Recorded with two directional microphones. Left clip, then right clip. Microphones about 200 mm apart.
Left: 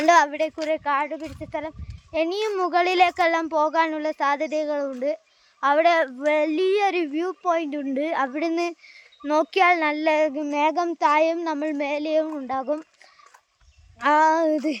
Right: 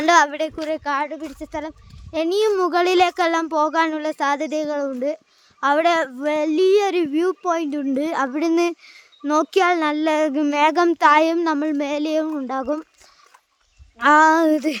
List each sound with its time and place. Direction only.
0.2 s speech: 35° right (ahead or behind)
0.7 s speech: 20° right (ahead or behind)
6.1 s speech: 20° right (ahead or behind)
7.1 s speech: 40° right (ahead or behind)
7.5 s speech: 25° right (ahead or behind)
10.4 s speech: 40° right (ahead or behind)
14.0 s speech: 35° right (ahead or behind)